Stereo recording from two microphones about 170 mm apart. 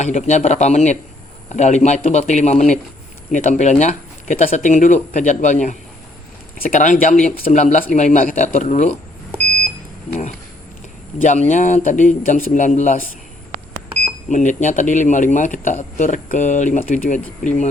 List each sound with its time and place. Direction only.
0.0 s speech: 45° left (ahead or behind)
11.2 s speech: 45° left (ahead or behind)
14.3 s speech: 45° left (ahead or behind)